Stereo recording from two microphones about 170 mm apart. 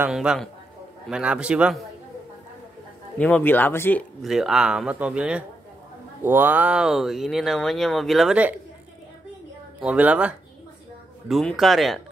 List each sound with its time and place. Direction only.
0.0 s speech: 5° right (ahead or behind)
3.2 s speech: 10° left (ahead or behind)
4.2 s speech: centre (ahead or behind)
9.8 s speech: 5° right (ahead or behind)